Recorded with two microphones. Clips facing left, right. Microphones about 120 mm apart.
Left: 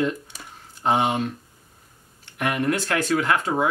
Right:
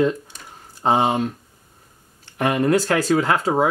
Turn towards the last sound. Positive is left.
turn(degrees=-30)  # may be behind; listen again after turning